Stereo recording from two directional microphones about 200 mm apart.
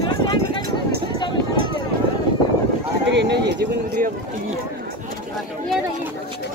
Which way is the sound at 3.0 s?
60° right (ahead or behind).